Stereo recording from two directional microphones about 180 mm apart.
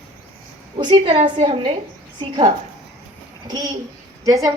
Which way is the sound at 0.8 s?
30° right (ahead or behind).